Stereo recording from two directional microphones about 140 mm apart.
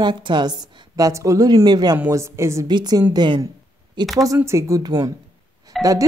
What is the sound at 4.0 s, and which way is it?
Speech, centre (ahead or behind).